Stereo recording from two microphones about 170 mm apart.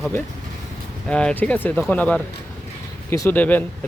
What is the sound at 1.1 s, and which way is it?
Speech, 5° left (ahead or behind).